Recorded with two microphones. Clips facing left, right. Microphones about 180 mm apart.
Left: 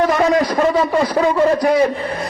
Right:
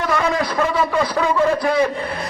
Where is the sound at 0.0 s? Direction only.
40° left (ahead or behind).